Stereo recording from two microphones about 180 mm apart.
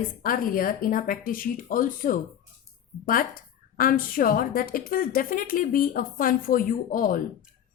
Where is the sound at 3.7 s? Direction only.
50° left (ahead or behind).